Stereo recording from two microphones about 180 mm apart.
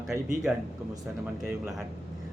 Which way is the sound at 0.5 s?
5° right (ahead or behind).